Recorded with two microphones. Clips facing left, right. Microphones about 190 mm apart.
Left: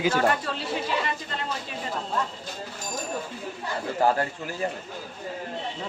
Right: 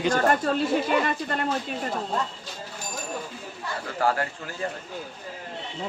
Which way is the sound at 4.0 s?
25° left (ahead or behind).